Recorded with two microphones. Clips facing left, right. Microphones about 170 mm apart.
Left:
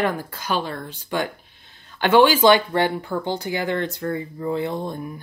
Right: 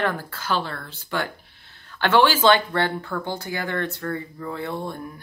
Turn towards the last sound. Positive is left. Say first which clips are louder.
# left 3 dB
turn(degrees=20)  # may be behind; listen again after turning